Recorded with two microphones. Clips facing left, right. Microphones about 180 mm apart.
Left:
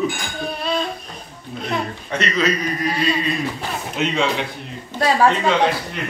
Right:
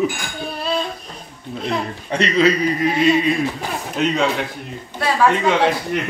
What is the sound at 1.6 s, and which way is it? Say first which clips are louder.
A man's voice: right 1 dB; 30° right (ahead or behind).